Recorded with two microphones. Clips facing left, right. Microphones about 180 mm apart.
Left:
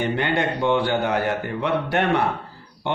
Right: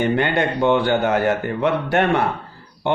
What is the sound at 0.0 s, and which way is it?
A man's voice, 55° right (ahead or behind).